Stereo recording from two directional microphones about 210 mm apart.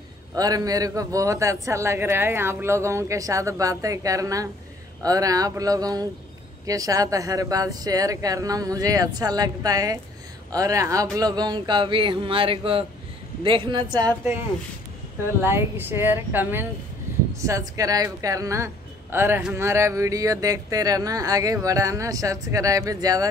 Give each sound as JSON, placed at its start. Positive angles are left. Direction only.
{"t": 0.4, "sound": "speech", "side_deg": -15}
{"t": 15.4, "sound": "speech", "side_deg": -10}